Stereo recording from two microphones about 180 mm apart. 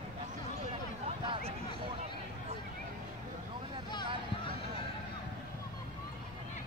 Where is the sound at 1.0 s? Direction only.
35° right (ahead or behind).